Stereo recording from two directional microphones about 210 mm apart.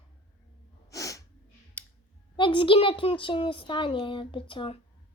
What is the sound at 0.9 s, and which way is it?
Sneeze, 15° left (ahead or behind).